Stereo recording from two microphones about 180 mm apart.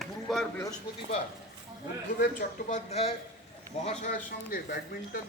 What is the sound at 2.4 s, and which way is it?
Speech, 40° left (ahead or behind).